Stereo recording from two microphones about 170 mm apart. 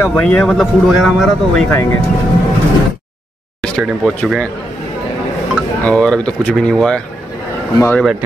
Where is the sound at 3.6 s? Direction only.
5° left (ahead or behind).